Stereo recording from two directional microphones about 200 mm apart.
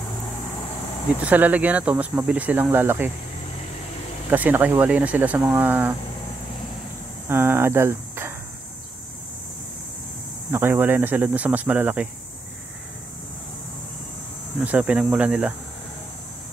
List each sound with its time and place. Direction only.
1.2 s speech: 10° right (ahead or behind)
4.3 s speech: 10° right (ahead or behind)
7.2 s speech: 10° right (ahead or behind)
10.5 s speech: 10° right (ahead or behind)
14.6 s speech: 5° right (ahead or behind)